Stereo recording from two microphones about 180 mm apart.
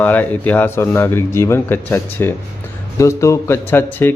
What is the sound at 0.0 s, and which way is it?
A man's voice, 10° left (ahead or behind).